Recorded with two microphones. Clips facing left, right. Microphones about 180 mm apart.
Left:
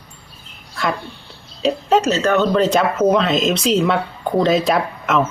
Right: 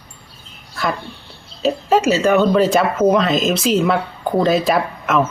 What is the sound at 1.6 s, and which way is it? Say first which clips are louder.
Speech: right 1 dB; 5° right (ahead or behind).